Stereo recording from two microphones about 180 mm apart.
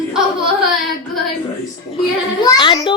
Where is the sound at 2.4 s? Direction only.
25° left (ahead or behind).